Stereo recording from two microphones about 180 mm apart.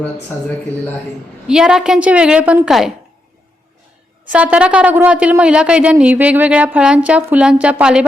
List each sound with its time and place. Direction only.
1.5 s a woman's voice: 5° right (ahead or behind)
4.3 s speech: 10° right (ahead or behind)